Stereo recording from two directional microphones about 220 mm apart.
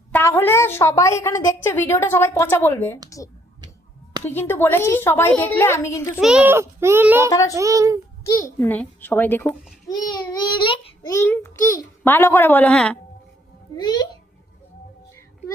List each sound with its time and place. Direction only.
0.1 s a woman's voice: 10° left (ahead or behind)
4.2 s a woman's voice: 10° left (ahead or behind)
6.1 s a child's voice: 5° right (ahead or behind)
7.3 s a woman's voice: 15° left (ahead or behind)
7.5 s a child's voice: 15° right (ahead or behind)
8.3 s a woman's voice: 15° left (ahead or behind)
9.9 s a child's voice: 20° left (ahead or behind)
13.8 s a child's voice: 20° left (ahead or behind)